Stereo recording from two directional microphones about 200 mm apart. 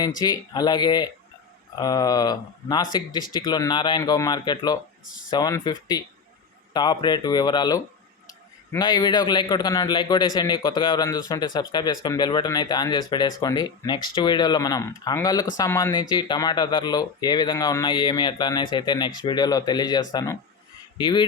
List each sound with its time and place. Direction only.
0.2 s a man's voice: 20° left (ahead or behind)
5.0 s speech: 45° left (ahead or behind)
5.3 s a man's voice: 20° left (ahead or behind)
8.8 s a man's voice: 20° left (ahead or behind)